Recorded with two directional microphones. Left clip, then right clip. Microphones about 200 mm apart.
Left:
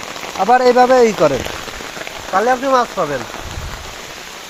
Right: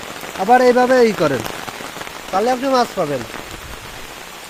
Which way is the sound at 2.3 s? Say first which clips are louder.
Left 3 dB; 20° right (ahead or behind).